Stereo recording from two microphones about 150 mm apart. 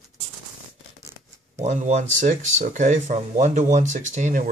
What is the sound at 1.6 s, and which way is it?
Speech, 50° right (ahead or behind).